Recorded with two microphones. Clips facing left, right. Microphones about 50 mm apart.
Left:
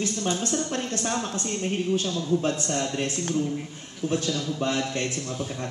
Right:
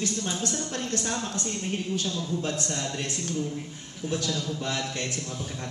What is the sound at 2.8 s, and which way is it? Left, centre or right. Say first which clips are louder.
Speech: left 5 dB; left.